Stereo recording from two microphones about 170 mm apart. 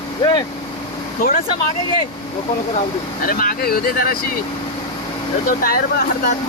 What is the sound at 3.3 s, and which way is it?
Speech, 55° left (ahead or behind).